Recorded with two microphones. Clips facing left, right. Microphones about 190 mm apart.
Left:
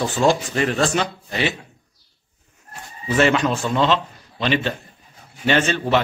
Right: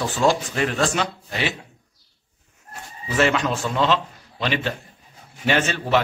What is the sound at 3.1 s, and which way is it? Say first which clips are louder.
A man's voice: left 3 dB; centre (ahead or behind).